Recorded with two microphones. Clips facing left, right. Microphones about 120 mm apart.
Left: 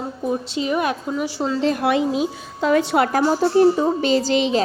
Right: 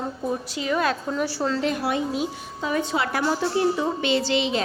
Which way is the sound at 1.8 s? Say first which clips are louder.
Left 6 dB; 85° left.